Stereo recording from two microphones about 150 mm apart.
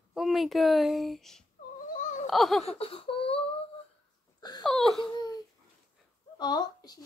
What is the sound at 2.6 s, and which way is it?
Laughter, 40° left (ahead or behind).